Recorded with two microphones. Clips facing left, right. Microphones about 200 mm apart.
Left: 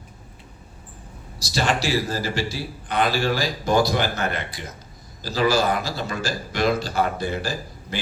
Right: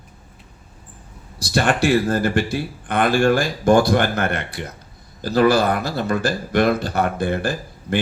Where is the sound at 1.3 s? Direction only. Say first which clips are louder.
Right 5 dB; 55° right (ahead or behind).